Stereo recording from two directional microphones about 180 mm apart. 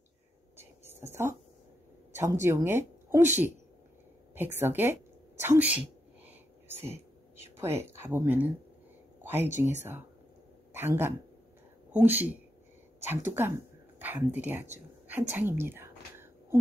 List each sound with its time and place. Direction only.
0.6 s whispering: 15° right (ahead or behind)
2.1 s speech: 15° right (ahead or behind)
6.2 s a sound: 10° right (ahead or behind)
7.6 s speech: 15° right (ahead or behind)
9.2 s whispering: 10° right (ahead or behind)
9.6 s speech: 10° right (ahead or behind)
13.9 s a sound: 10° right (ahead or behind)